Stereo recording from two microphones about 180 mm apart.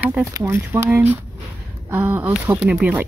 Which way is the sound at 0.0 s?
10° right (ahead or behind).